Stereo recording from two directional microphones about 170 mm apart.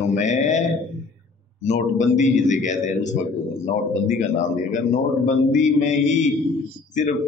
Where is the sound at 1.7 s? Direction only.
45° left (ahead or behind).